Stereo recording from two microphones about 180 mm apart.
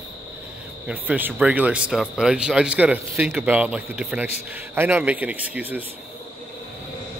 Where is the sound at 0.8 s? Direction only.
10° right (ahead or behind).